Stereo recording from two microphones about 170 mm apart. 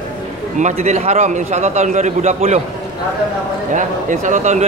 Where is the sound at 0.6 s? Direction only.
45° right (ahead or behind).